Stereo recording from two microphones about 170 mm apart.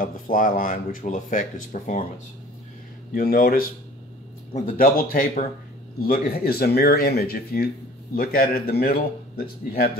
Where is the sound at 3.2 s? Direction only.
60° left (ahead or behind).